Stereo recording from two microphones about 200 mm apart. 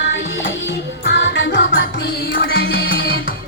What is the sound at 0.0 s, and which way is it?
Music, 65° left (ahead or behind).